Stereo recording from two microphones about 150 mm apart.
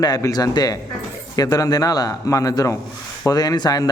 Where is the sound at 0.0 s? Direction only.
25° left (ahead or behind).